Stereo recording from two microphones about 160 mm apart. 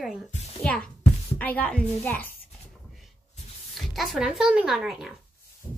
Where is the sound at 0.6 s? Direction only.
5° left (ahead or behind).